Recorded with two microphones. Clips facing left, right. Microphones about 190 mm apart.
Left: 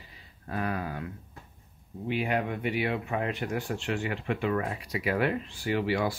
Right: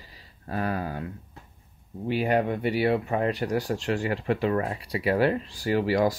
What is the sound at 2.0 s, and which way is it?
Speech, 40° right (ahead or behind).